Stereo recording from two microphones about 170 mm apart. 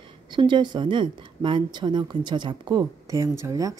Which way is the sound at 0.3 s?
25° right (ahead or behind).